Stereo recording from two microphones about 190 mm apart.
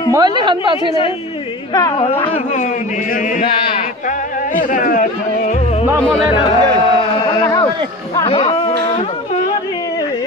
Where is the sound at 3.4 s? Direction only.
25° left (ahead or behind).